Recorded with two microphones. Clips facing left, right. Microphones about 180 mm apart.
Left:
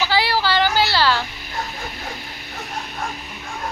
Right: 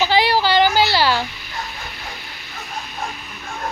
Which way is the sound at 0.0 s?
20° right (ahead or behind).